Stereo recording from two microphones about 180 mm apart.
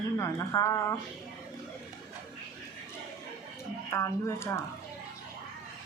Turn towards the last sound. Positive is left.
turn(degrees=15)  # may be behind; listen again after turning